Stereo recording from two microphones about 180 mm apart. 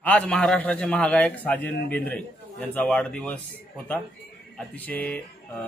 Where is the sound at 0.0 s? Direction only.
5° left (ahead or behind).